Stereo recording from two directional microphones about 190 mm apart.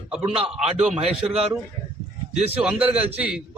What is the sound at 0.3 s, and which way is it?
Speech, 5° right (ahead or behind).